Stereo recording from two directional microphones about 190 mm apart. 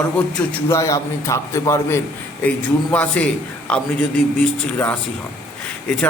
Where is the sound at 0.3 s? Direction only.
15° left (ahead or behind).